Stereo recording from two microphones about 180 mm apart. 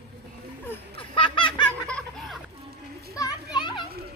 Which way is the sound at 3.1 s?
20° left (ahead or behind).